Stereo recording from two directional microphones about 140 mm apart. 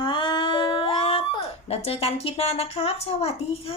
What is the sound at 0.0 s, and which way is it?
Cat, 35° left (ahead or behind).